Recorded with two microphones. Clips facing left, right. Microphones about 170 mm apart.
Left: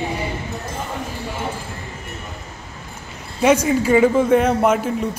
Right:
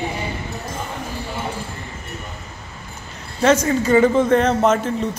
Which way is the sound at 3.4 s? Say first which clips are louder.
Left 1 dB; 10° left (ahead or behind).